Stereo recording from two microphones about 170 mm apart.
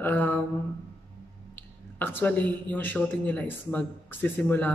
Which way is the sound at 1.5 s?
10° left (ahead or behind).